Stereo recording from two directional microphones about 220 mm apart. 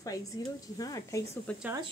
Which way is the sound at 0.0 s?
15° left (ahead or behind).